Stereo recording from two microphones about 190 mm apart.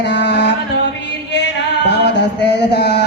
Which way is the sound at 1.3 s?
65° left (ahead or behind).